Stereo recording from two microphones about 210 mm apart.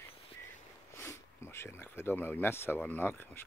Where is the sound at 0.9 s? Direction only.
10° left (ahead or behind).